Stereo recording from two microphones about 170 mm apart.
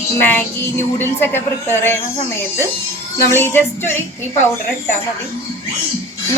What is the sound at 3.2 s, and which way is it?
Speech, 15° left (ahead or behind).